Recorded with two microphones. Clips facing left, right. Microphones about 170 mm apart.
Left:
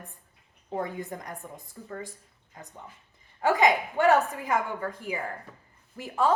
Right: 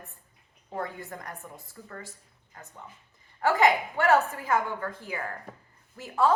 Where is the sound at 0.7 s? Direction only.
15° left (ahead or behind).